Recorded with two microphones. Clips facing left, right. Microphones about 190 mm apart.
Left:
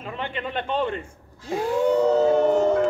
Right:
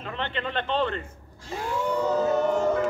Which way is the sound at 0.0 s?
10° left (ahead or behind).